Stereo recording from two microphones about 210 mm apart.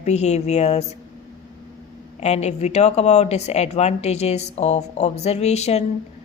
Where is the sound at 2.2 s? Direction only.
30° left (ahead or behind).